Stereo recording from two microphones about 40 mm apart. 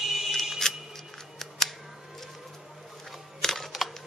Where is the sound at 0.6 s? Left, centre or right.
Centre.